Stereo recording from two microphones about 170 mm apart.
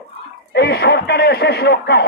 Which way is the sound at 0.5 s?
70° left (ahead or behind).